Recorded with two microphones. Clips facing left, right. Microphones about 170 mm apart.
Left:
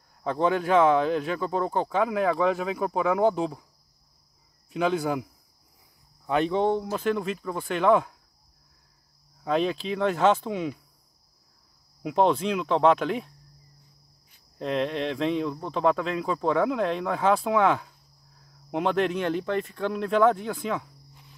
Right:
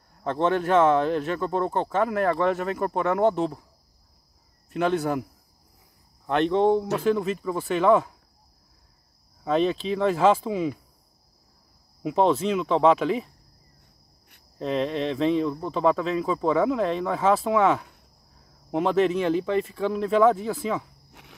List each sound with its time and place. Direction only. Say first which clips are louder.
0.2 s speech: right 1 dB; centre (ahead or behind)
4.6 s speech: right 1 dB; centre (ahead or behind)
6.2 s speech: right 3 dB; centre (ahead or behind)
9.4 s speech: right 2 dB; centre (ahead or behind)
12.0 s speech: right 1 dB; centre (ahead or behind)
14.6 s speech: right 1 dB; centre (ahead or behind)
21.1 s walk: right 5 dB; 80° right